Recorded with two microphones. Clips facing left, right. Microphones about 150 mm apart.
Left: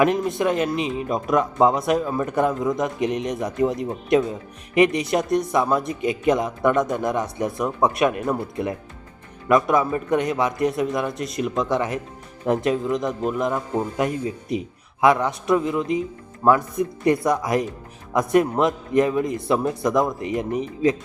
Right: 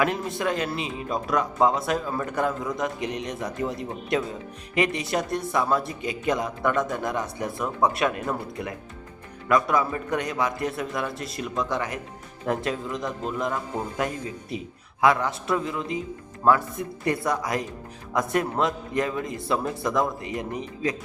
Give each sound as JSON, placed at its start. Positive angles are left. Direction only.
{"t": 0.0, "sound": "speech", "side_deg": 20}